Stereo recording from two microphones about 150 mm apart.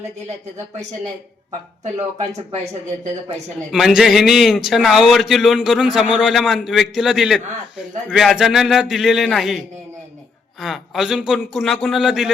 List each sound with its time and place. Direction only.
1.8 s speech: 50° right (ahead or behind)
3.7 s speech: 5° right (ahead or behind)